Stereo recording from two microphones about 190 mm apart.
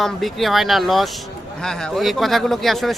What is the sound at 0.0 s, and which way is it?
Speech, centre (ahead or behind).